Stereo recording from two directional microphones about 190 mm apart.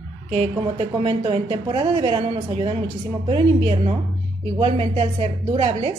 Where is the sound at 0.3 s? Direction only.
30° right (ahead or behind).